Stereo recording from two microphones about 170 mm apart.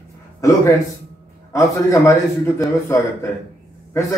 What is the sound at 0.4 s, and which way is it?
A man's voice, 20° left (ahead or behind).